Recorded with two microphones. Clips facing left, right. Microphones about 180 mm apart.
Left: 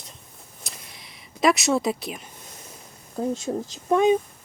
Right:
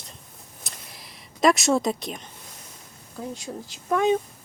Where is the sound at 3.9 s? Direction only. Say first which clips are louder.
Left 3 dB; 20° left (ahead or behind).